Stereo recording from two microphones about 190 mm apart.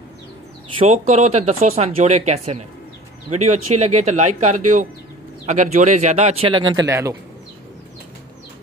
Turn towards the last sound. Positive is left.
turn(degrees=-15)  # may be behind; listen again after turning